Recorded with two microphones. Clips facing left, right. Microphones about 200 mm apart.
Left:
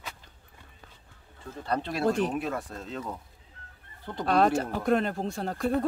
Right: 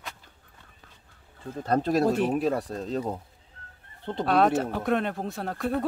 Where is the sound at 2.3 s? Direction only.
35° right (ahead or behind).